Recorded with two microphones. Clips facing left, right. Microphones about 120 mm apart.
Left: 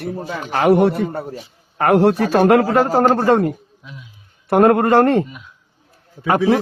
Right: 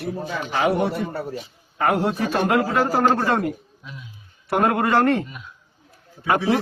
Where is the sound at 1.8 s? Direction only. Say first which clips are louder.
Left 7 dB; 65° left (ahead or behind); by 3.5 s 35° left (ahead or behind).